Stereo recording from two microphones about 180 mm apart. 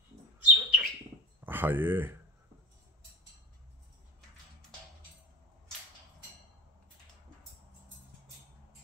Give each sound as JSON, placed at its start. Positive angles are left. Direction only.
{"t": 0.4, "sound": "bird", "side_deg": -5}
{"t": 1.4, "sound": "speech", "side_deg": -10}